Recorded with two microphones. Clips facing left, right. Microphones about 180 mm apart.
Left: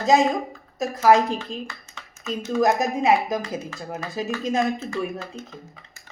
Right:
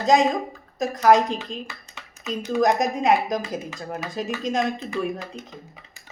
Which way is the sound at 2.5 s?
5° left (ahead or behind).